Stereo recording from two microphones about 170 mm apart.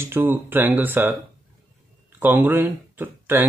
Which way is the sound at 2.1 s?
10° right (ahead or behind).